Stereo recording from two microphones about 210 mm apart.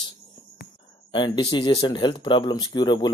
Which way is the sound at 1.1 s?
20° left (ahead or behind).